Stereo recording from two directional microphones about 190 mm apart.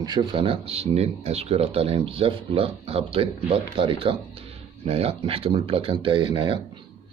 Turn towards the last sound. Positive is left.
turn(degrees=-25)  # may be behind; listen again after turning